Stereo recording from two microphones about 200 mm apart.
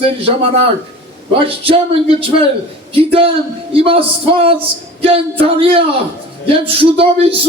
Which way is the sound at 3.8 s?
25° right (ahead or behind).